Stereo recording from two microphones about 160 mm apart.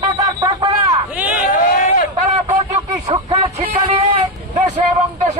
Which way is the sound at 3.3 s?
40° right (ahead or behind).